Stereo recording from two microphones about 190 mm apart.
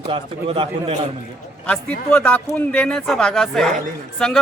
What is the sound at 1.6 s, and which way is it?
A man's voice, 5° left (ahead or behind).